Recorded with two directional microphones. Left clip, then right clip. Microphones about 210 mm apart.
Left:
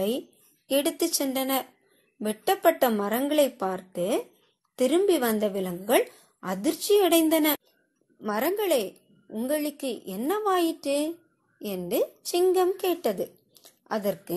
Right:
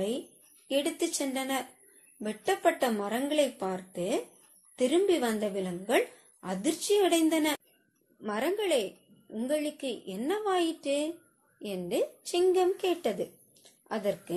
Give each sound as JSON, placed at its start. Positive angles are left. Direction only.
{"t": 0.7, "sound": "a woman's voice", "side_deg": 40}